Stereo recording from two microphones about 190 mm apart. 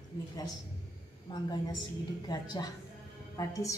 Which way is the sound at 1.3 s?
25° left (ahead or behind).